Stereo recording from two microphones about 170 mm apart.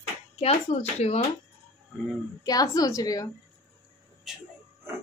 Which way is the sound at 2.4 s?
20° left (ahead or behind).